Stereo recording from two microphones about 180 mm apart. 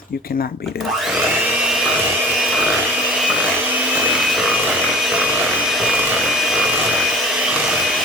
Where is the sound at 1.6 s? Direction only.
5° right (ahead or behind).